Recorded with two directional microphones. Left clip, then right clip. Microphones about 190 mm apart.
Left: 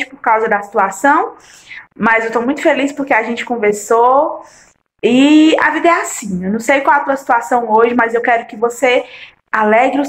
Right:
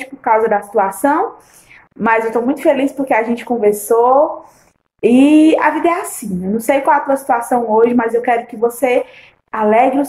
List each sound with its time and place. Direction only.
0.0 s a woman's voice: 5° right (ahead or behind)